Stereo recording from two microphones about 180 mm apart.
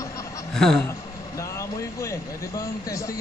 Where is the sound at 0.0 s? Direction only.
15° left (ahead or behind).